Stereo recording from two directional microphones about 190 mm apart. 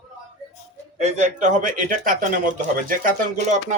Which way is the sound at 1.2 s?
40° right (ahead or behind).